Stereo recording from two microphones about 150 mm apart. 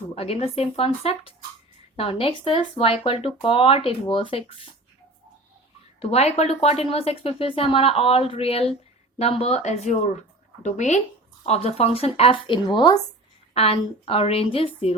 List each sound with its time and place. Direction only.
0.1 s speech: 40° left (ahead or behind)
6.0 s speech: 45° left (ahead or behind)